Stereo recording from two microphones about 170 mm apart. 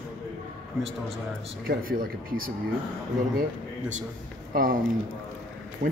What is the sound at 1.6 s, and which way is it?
Speech, 55° right (ahead or behind).